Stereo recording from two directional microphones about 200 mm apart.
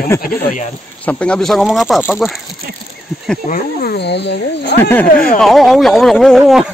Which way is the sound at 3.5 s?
50° left (ahead or behind).